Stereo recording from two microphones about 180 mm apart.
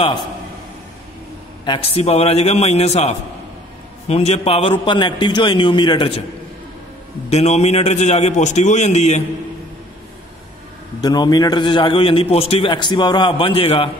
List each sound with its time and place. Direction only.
1.6 s a man's voice: 30° left (ahead or behind)
7.2 s a man's voice: 35° left (ahead or behind)
11.0 s a man's voice: 20° left (ahead or behind)